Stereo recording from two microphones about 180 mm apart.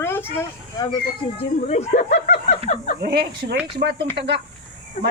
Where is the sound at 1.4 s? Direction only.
40° left (ahead or behind).